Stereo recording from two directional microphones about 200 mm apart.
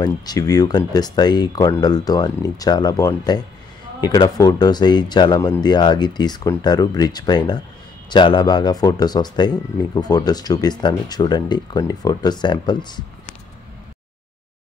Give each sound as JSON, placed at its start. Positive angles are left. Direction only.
{"t": 0.0, "sound": "speech", "side_deg": 20}